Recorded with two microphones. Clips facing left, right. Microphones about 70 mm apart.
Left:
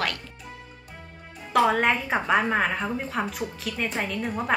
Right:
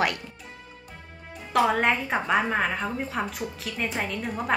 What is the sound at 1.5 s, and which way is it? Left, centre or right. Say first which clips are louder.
A woman's voice: left 1 dB; centre.